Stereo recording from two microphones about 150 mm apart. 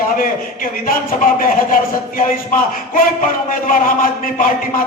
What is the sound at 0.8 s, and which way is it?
Speech, 70° left (ahead or behind).